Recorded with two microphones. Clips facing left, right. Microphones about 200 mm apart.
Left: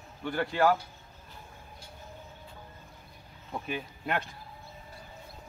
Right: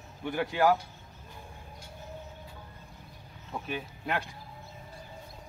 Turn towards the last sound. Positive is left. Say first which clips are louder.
# left 1 dB
turn(degrees=0)  # may be behind; listen again after turning